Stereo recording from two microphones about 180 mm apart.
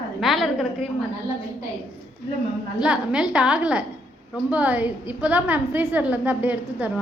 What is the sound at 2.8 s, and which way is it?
A woman's voice, 5° right (ahead or behind).